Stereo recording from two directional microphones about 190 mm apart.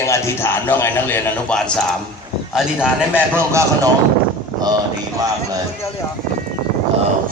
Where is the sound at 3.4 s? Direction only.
15° right (ahead or behind).